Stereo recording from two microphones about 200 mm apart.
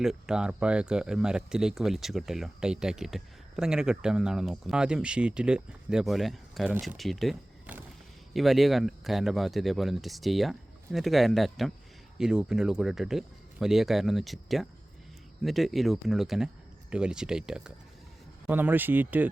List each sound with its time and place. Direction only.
0.0 s speech: 5° right (ahead or behind)